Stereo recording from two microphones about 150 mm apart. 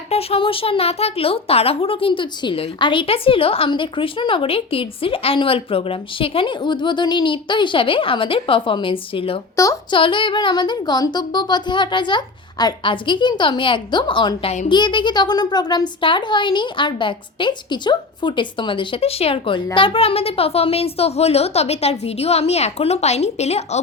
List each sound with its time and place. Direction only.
0.1 s a woman's voice: 40° left (ahead or behind)